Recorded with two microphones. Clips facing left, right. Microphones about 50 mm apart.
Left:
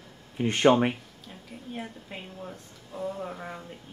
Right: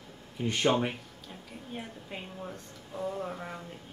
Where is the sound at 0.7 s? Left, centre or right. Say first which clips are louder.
Left 7 dB; left.